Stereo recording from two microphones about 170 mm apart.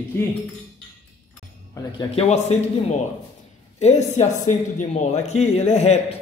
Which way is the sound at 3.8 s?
40° left (ahead or behind).